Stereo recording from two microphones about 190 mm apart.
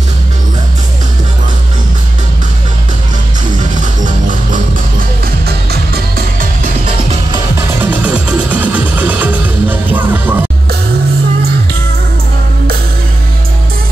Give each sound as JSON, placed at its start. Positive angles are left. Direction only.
{"t": 3.7, "sound": "music", "side_deg": -40}
{"t": 7.8, "sound": "music", "side_deg": -10}